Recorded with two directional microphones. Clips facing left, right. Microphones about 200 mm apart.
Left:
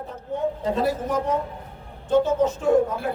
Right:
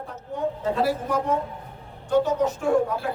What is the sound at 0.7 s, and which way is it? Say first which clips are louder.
Speech: even; 20° left (ahead or behind).